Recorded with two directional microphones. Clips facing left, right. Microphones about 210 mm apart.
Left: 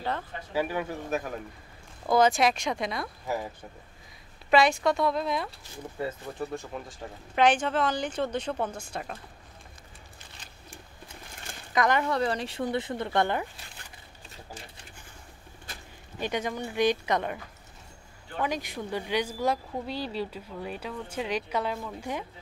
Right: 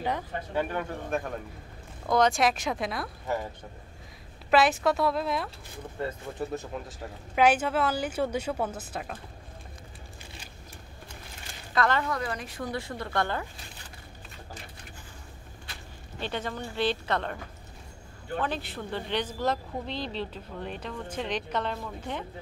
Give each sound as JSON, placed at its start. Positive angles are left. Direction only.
{"t": 0.5, "sound": "speech", "side_deg": 5}
{"t": 4.5, "sound": "speech", "side_deg": -5}
{"t": 6.5, "sound": "speech", "side_deg": -5}
{"t": 11.7, "sound": "speech", "side_deg": 15}
{"t": 12.1, "sound": "speech", "side_deg": 30}
{"t": 16.2, "sound": "speech", "side_deg": 15}
{"t": 18.4, "sound": "speech", "side_deg": 10}